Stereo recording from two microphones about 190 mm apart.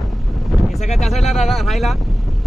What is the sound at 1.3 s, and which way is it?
Speech, centre (ahead or behind).